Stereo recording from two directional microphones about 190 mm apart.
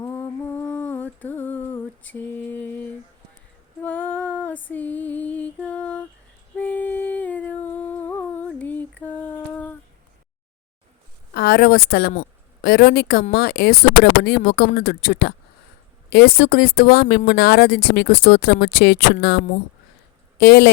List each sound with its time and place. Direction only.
0.0 s humming: 15° left (ahead or behind)
3.8 s female singing: 10° left (ahead or behind)
6.6 s humming: 10° left (ahead or behind)
11.3 s speech: 60° left (ahead or behind)
20.4 s speech: 60° left (ahead or behind)